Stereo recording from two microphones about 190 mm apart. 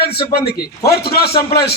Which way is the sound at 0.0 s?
55° left (ahead or behind).